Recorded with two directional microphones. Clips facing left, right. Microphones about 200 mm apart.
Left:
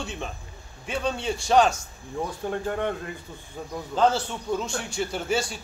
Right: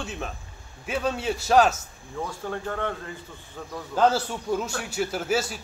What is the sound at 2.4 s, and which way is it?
A man's voice, 20° left (ahead or behind).